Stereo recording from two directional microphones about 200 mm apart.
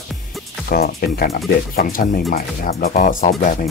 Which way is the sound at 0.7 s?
50° left (ahead or behind).